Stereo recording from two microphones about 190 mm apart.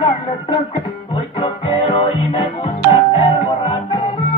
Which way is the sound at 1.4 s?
25° left (ahead or behind).